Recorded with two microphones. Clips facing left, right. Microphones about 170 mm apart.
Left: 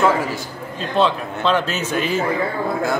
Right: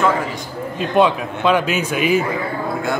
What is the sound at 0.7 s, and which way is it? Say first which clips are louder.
A man's voice: right 3 dB; 15° right (ahead or behind).